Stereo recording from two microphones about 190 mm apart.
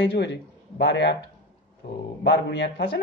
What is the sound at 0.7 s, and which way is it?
Speech, 65° left (ahead or behind).